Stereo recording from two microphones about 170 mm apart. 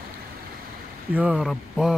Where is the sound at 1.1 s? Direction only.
10° right (ahead or behind).